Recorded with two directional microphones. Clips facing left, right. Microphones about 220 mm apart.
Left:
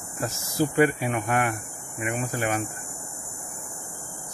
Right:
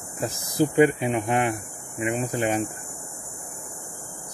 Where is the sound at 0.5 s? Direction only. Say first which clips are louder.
Right 3 dB; 20° right (ahead or behind).